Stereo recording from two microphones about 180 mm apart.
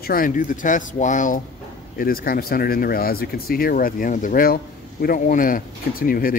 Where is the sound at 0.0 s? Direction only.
50° left (ahead or behind).